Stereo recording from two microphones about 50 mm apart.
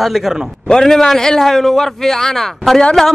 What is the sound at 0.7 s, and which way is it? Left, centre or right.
A man's voice, centre.